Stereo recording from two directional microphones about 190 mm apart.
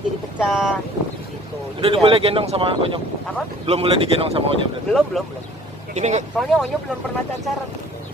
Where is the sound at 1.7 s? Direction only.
30° right (ahead or behind).